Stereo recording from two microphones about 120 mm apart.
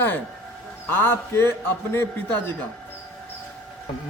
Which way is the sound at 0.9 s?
15° left (ahead or behind).